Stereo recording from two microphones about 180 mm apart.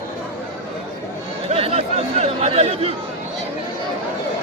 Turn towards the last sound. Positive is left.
turn(degrees=-35)  # may be behind; listen again after turning